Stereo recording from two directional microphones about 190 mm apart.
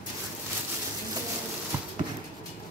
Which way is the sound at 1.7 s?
10° right (ahead or behind).